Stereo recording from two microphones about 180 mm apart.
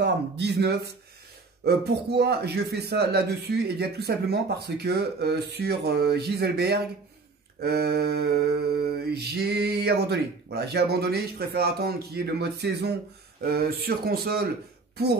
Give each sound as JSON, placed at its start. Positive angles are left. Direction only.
{"t": 0.0, "sound": "speech", "side_deg": -65}